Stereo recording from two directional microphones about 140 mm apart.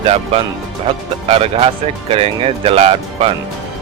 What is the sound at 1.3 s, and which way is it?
Speech, 45° right (ahead or behind).